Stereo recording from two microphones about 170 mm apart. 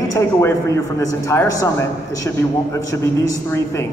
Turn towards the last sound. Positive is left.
turn(degrees=15)  # may be behind; listen again after turning